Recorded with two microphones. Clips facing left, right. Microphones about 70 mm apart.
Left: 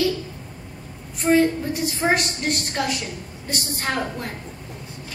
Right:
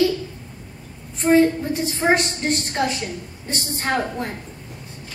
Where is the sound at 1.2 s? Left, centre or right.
Right.